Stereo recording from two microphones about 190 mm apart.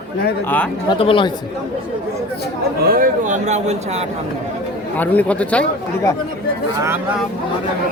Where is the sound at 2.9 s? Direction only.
45° right (ahead or behind).